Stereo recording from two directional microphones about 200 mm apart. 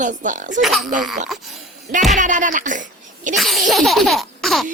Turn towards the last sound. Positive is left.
turn(degrees=0)  # may be behind; listen again after turning